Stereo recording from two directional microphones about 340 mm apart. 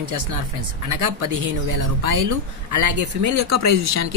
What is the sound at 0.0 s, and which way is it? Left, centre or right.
A man's voice, right.